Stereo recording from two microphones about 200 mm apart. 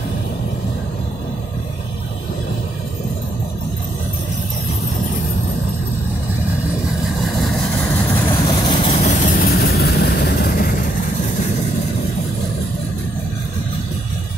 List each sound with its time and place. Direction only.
8.3 s vehicle: 20° left (ahead or behind)
8.8 s vehicle: 35° left (ahead or behind)